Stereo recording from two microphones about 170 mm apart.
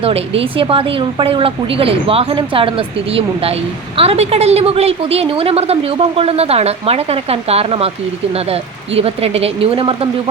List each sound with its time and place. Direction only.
0.0 s a woman's voice: 35° right (ahead or behind)
3.9 s a woman's voice: 35° right (ahead or behind)
9.0 s a woman's voice: 35° right (ahead or behind)